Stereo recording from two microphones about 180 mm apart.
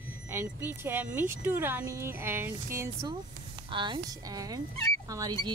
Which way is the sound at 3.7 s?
25° right (ahead or behind).